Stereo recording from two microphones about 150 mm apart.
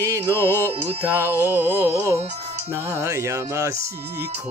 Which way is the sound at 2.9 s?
20° right (ahead or behind).